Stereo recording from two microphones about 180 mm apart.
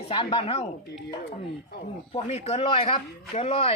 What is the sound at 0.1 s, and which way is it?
Speech, 30° left (ahead or behind).